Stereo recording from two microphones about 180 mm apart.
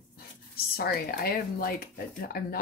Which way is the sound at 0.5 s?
60° left (ahead or behind).